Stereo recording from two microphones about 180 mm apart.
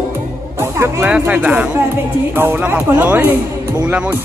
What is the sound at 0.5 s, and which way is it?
Speech, 15° right (ahead or behind).